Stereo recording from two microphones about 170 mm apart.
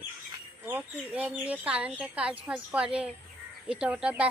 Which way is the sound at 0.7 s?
10° right (ahead or behind).